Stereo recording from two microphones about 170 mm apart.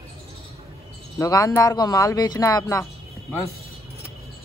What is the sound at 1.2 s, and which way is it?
Speech, 20° left (ahead or behind).